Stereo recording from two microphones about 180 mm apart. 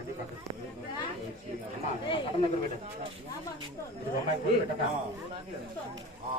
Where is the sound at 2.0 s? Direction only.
30° left (ahead or behind).